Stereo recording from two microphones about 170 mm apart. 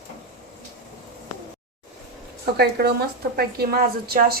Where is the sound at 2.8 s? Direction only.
65° right (ahead or behind).